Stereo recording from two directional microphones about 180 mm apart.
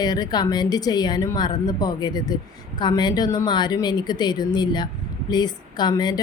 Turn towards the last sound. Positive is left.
turn(degrees=25)  # may be behind; listen again after turning